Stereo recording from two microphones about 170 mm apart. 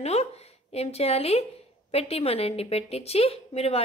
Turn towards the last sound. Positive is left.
turn(degrees=35)  # may be behind; listen again after turning